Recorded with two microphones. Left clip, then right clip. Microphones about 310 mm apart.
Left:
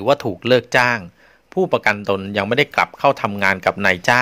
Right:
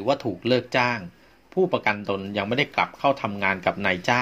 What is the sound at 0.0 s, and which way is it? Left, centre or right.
Speech, left.